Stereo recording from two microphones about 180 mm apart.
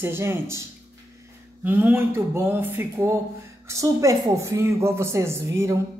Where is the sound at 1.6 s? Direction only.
10° right (ahead or behind).